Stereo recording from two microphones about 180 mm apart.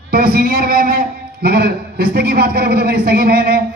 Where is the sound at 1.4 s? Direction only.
60° right (ahead or behind).